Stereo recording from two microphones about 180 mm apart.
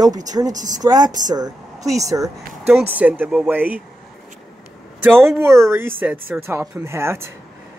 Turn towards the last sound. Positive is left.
turn(degrees=-15)  # may be behind; listen again after turning